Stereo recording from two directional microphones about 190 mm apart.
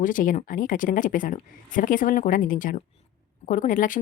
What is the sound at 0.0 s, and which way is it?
Speech, 45° left (ahead or behind).